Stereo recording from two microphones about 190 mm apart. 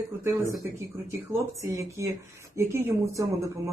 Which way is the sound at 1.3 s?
15° right (ahead or behind).